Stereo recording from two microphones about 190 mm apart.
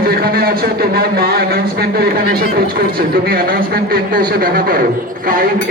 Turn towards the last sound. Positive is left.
turn(degrees=-50)  # may be behind; listen again after turning